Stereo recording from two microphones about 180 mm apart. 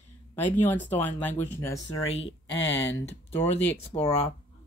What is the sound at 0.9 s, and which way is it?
Speech, 10° left (ahead or behind).